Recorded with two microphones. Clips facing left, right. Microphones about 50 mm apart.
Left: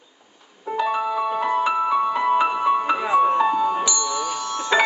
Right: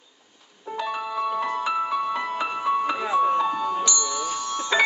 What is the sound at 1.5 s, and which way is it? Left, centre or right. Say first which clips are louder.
Music: left 5 dB; left.